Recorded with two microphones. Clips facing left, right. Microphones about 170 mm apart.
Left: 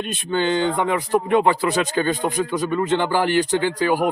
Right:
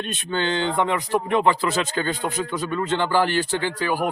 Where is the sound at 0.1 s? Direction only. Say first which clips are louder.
Left 5 dB; 10° left (ahead or behind).